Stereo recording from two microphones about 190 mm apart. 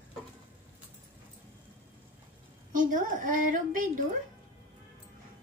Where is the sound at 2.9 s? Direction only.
45° right (ahead or behind).